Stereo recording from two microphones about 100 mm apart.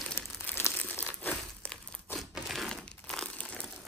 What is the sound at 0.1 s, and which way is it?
Crumpling, 25° left (ahead or behind).